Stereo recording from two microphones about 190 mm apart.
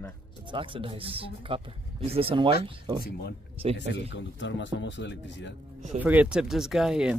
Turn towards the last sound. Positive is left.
turn(degrees=-5)  # may be behind; listen again after turning